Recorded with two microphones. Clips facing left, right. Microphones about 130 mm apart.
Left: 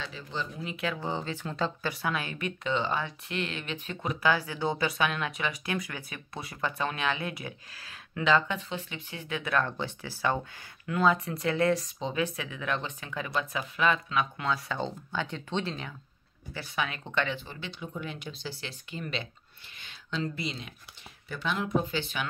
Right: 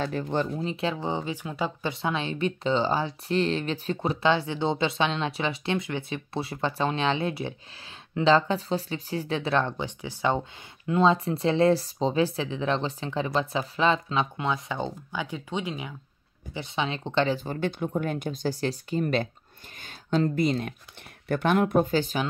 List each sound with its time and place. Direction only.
0.0 s speech: 55° right (ahead or behind)
0.5 s speech: 30° right (ahead or behind); by 15.9 s 10° right (ahead or behind)
16.5 s speech: 25° right (ahead or behind); by 22.2 s 40° right (ahead or behind)